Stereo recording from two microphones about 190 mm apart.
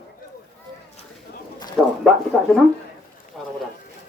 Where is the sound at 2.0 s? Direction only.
Centre (ahead or behind).